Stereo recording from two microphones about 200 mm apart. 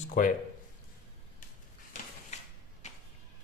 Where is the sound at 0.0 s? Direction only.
40° left (ahead or behind).